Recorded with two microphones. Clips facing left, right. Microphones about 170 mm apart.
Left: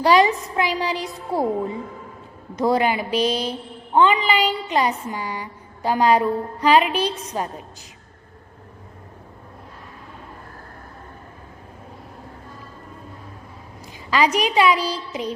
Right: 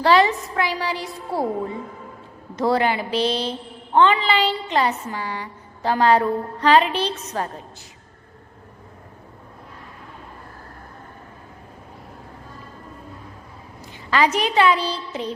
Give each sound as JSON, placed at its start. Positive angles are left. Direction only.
{"t": 0.0, "sound": "a woman's voice", "side_deg": 15}
{"t": 2.6, "sound": "a woman's voice", "side_deg": 15}
{"t": 14.1, "sound": "a woman's voice", "side_deg": 15}